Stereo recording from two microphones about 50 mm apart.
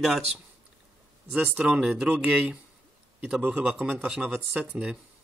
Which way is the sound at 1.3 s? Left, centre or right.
Centre.